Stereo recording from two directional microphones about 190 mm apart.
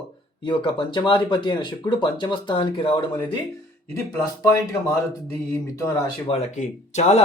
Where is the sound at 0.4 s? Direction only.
25° left (ahead or behind).